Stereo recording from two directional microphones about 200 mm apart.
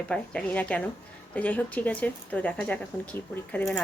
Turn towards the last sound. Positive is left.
turn(degrees=5)  # may be behind; listen again after turning